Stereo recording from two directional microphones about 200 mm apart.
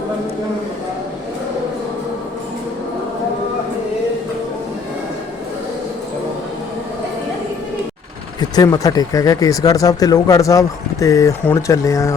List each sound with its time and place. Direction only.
8.4 s speech: 15° left (ahead or behind)